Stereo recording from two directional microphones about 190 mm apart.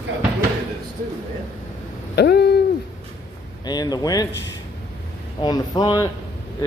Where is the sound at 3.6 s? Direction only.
20° left (ahead or behind).